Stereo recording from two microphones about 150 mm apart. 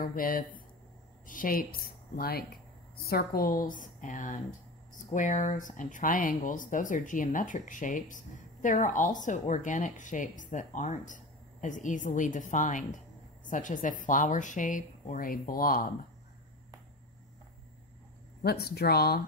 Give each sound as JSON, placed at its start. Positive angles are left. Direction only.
{"t": 0.0, "sound": "a woman's voice", "side_deg": 70}
{"t": 18.4, "sound": "speech", "side_deg": 90}